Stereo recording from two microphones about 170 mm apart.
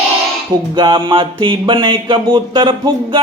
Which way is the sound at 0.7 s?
30° right (ahead or behind).